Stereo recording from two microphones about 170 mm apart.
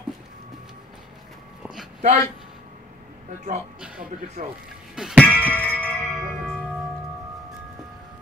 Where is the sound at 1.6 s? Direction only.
Centre (ahead or behind).